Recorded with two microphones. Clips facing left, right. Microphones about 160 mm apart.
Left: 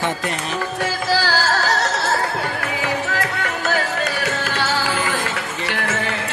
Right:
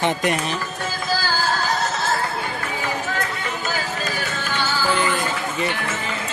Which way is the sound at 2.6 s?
75° left (ahead or behind).